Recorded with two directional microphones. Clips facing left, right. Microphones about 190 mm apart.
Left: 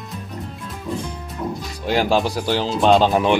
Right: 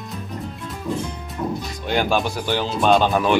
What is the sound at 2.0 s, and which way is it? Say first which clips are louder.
Speech: left 2 dB; 30° left (ahead or behind).